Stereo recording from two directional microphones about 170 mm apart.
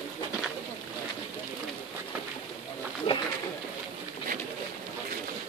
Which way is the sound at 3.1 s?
35° left (ahead or behind).